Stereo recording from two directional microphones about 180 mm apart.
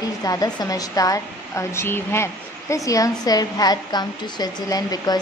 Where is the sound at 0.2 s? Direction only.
20° left (ahead or behind).